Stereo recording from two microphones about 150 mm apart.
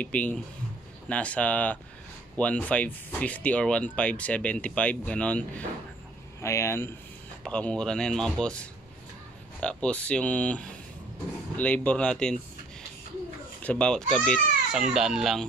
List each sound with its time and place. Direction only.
0.0 s speech: 10° left (ahead or behind)
7.4 s speech: 5° left (ahead or behind)
13.6 s speech: 10° left (ahead or behind)
14.7 s speech: 5° right (ahead or behind)